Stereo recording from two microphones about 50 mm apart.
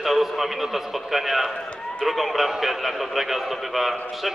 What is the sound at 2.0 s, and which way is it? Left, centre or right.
A man's voice, centre.